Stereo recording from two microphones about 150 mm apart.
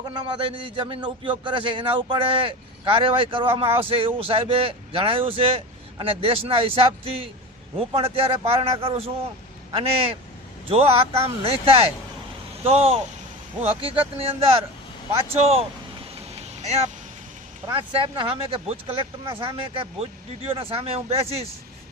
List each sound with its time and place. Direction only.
0.0 s a man's voice: 35° right (ahead or behind)
10.7 s a man's voice: 40° right (ahead or behind)
16.6 s speech: 45° right (ahead or behind)
17.7 s a man's voice: 30° right (ahead or behind)